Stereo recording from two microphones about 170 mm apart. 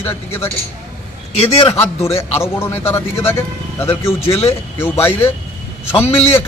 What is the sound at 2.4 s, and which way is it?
Speech, 15° left (ahead or behind).